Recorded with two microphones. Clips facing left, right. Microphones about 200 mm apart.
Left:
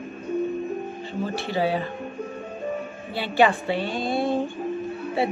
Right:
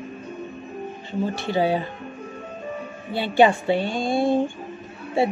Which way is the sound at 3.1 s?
25° right (ahead or behind).